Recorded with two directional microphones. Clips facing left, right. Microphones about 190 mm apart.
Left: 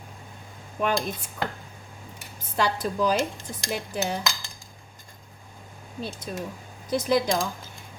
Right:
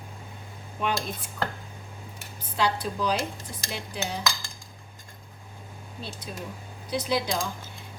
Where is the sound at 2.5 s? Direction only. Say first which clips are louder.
Left 2 dB; 45° left (ahead or behind).